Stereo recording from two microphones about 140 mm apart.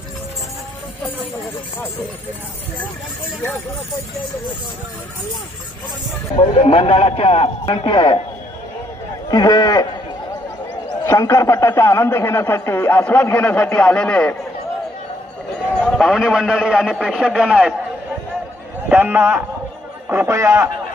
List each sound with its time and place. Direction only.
6.3 s a man's voice: 45° left (ahead or behind)
9.3 s speech: 30° left (ahead or behind)
11.1 s a man's voice: 20° left (ahead or behind)
15.8 s a man's voice: centre (ahead or behind)
18.9 s a man's voice: 15° right (ahead or behind)